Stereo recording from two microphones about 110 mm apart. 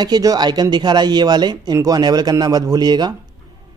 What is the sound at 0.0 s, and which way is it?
Speech, 35° right (ahead or behind).